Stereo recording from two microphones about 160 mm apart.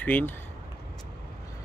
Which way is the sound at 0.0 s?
10° left (ahead or behind).